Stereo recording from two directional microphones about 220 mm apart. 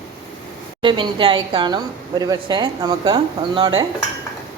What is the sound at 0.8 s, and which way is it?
A woman's voice, 20° right (ahead or behind).